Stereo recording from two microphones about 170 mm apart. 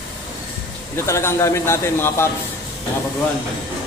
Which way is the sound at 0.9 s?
15° left (ahead or behind).